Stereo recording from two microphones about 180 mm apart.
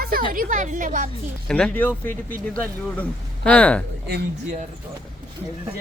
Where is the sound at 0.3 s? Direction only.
50° right (ahead or behind).